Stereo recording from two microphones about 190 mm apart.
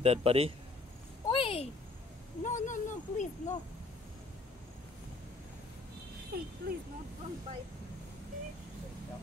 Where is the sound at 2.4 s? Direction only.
40° left (ahead or behind).